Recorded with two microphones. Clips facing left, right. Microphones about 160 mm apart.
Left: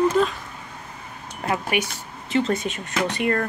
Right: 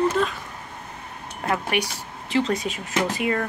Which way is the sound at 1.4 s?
5° left (ahead or behind).